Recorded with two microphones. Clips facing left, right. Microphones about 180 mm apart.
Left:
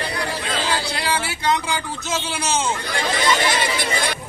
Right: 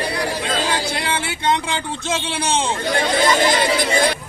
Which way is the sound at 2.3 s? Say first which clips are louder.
Right 1 dB; 30° right (ahead or behind).